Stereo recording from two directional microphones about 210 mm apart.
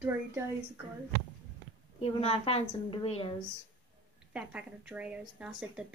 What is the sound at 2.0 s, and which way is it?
A woman's voice, 30° left (ahead or behind).